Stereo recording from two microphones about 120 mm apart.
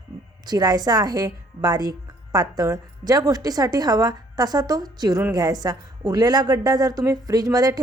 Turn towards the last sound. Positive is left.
turn(degrees=-30)  # may be behind; listen again after turning